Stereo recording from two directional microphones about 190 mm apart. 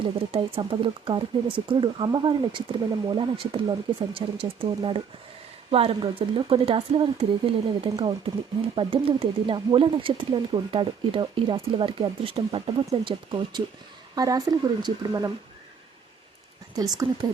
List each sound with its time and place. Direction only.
0.0 s speech: 30° right (ahead or behind)
16.7 s speech: 20° right (ahead or behind)